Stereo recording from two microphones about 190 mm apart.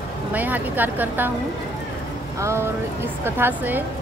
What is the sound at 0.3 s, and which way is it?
Speech, 10° right (ahead or behind).